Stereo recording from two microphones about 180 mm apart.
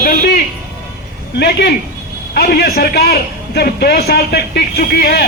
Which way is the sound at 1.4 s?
65° left (ahead or behind).